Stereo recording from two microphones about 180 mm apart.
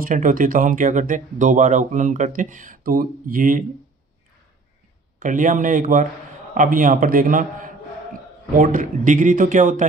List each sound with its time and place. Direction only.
0.0 s speech: 50° right (ahead or behind)
5.2 s speech: 45° right (ahead or behind)